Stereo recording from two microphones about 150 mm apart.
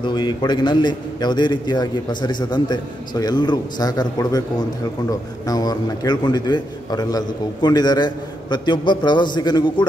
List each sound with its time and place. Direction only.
0.0 s a man's voice: 30° left (ahead or behind)